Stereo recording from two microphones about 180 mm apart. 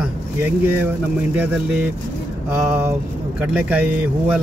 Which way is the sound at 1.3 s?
10° right (ahead or behind).